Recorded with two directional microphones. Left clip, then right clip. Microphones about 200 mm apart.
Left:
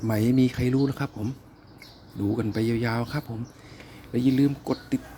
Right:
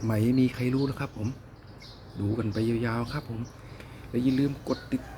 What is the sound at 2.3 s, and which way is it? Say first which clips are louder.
Speech: left 2 dB; 35° left (ahead or behind).